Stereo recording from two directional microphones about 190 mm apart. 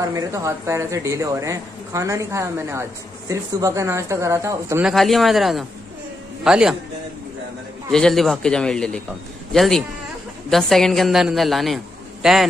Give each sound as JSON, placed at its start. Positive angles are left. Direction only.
{"t": 0.0, "sound": "speech", "side_deg": -15}
{"t": 4.8, "sound": "a man's voice", "side_deg": 0}
{"t": 7.9, "sound": "a man's voice", "side_deg": 0}